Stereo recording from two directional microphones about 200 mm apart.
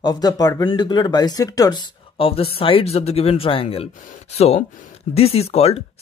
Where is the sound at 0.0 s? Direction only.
20° left (ahead or behind).